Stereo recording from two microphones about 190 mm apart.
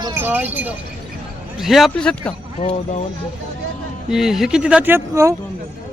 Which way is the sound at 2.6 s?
35° left (ahead or behind).